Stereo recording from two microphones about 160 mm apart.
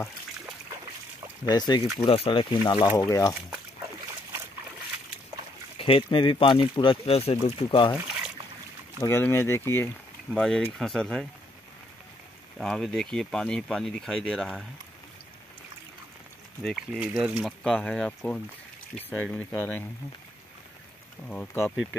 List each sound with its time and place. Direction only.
1.5 s speech: 25° left (ahead or behind)
2.0 s speech: 35° left (ahead or behind); by 3.3 s 20° left (ahead or behind)
5.8 s speech: 35° left (ahead or behind)
9.0 s speech: 15° left (ahead or behind)
10.3 s speech: 5° left (ahead or behind)
12.5 s speech: centre (ahead or behind)
16.6 s speech: centre (ahead or behind)
21.3 s speech: 10° left (ahead or behind)